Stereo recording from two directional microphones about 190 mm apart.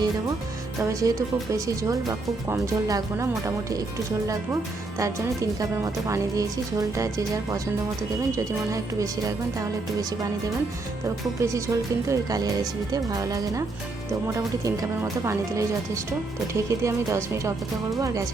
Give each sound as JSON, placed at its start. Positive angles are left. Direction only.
{"t": 0.8, "sound": "a woman's voice", "side_deg": -15}
{"t": 4.9, "sound": "a woman's voice", "side_deg": -15}
{"t": 11.3, "sound": "a woman's voice", "side_deg": -15}